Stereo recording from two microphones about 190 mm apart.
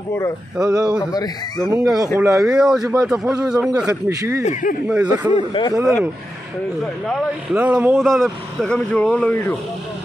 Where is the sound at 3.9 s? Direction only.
20° right (ahead or behind).